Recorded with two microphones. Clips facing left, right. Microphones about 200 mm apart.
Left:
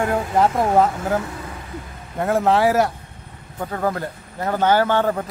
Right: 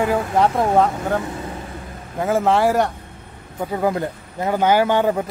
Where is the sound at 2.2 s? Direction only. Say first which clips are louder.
Even; centre (ahead or behind).